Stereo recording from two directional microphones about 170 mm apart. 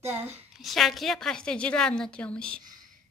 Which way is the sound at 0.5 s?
Centre (ahead or behind).